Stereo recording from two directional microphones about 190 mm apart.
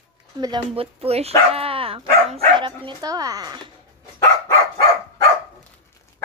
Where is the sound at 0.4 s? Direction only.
25° right (ahead or behind).